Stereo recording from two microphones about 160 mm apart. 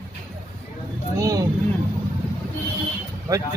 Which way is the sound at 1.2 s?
20° right (ahead or behind).